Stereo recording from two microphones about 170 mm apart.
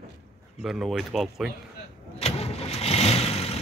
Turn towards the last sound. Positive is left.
turn(degrees=40)  # may be behind; listen again after turning